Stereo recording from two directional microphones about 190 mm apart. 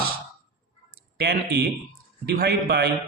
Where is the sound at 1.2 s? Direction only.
60° right (ahead or behind).